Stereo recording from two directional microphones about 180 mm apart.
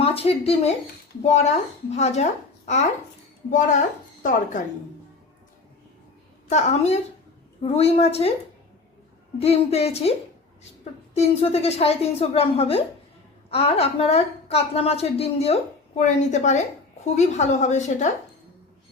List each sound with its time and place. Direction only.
0.0 s a woman's voice: 35° left (ahead or behind)
6.5 s a woman's voice: 40° left (ahead or behind)
9.4 s a woman's voice: 35° left (ahead or behind)
11.1 s a woman's voice: 35° left (ahead or behind)